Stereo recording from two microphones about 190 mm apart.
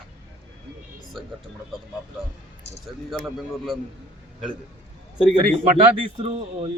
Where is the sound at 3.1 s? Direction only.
Centre (ahead or behind).